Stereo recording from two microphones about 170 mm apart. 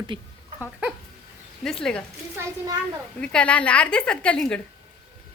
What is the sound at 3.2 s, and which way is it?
A woman's voice, 5° left (ahead or behind).